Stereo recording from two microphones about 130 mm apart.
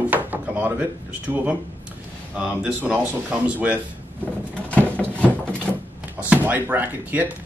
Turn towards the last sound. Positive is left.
turn(degrees=-15)  # may be behind; listen again after turning